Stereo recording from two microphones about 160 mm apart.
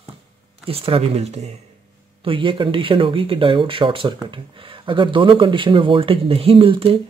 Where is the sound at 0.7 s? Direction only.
35° right (ahead or behind).